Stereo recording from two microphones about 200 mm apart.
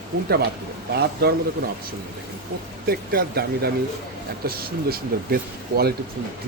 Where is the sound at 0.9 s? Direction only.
55° right (ahead or behind).